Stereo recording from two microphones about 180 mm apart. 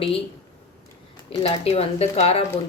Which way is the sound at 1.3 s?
35° left (ahead or behind).